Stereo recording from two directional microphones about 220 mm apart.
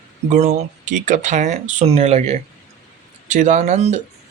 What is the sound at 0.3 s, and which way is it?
Speech, 30° right (ahead or behind).